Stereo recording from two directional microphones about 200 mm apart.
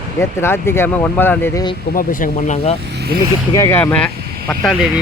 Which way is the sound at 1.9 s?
45° left (ahead or behind).